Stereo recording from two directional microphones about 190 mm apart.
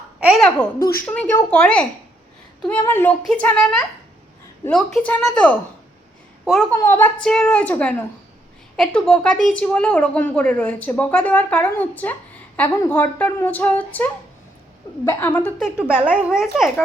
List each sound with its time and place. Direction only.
0.3 s a woman's voice: 5° left (ahead or behind)
0.8 s speech: 50° left (ahead or behind)
1.0 s a woman's voice: 5° left (ahead or behind)
16.0 s a woman's voice: 5° right (ahead or behind)